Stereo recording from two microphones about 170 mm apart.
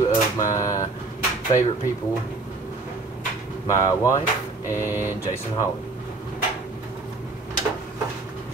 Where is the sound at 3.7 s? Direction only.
20° left (ahead or behind).